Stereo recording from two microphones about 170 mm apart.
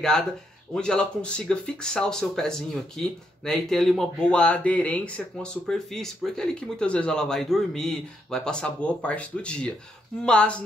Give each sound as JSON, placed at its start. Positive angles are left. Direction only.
{"t": 0.7, "sound": "speech", "side_deg": 5}